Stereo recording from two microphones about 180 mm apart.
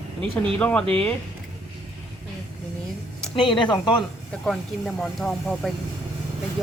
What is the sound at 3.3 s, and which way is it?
Speech, 25° left (ahead or behind).